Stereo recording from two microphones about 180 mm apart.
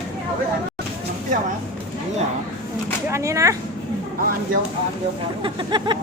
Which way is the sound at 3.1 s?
15° right (ahead or behind).